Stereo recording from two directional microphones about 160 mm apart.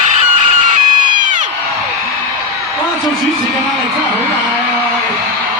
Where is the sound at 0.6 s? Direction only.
55° right (ahead or behind).